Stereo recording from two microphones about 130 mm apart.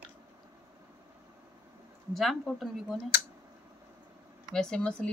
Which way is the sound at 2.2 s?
Centre (ahead or behind).